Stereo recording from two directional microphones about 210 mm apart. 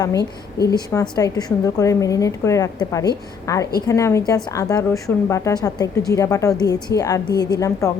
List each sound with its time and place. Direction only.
0.2 s a woman's voice: 50° left (ahead or behind)
0.9 s a woman's voice: 15° left (ahead or behind)
7.3 s a woman's voice: 50° left (ahead or behind)
7.6 s a woman's voice: 15° left (ahead or behind)